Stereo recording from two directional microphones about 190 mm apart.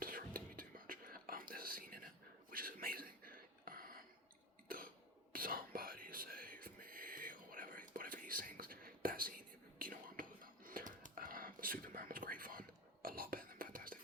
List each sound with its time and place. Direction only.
0.0 s whispering: 50° right (ahead or behind)
2.5 s a sound: 50° right (ahead or behind)
5.3 s whispering: 50° right (ahead or behind)